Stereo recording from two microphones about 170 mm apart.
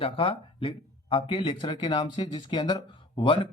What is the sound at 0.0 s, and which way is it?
Speech, 30° left (ahead or behind).